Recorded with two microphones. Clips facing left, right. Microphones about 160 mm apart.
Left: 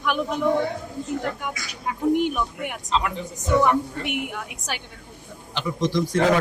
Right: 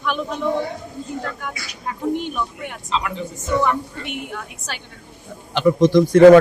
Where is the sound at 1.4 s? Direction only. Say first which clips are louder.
Even; 15° left (ahead or behind).